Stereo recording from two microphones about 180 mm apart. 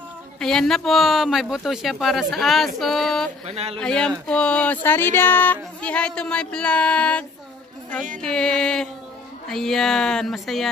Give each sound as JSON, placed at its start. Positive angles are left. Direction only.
{"t": 0.4, "sound": "speech", "side_deg": 5}
{"t": 3.4, "sound": "speech", "side_deg": -35}
{"t": 3.8, "sound": "speech", "side_deg": 5}